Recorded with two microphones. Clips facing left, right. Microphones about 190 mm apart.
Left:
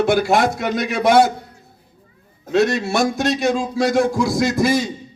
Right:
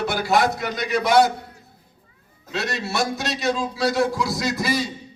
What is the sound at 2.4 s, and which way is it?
A man's voice, 50° left (ahead or behind).